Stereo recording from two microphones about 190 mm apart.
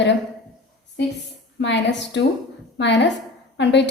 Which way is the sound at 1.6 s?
65° left (ahead or behind).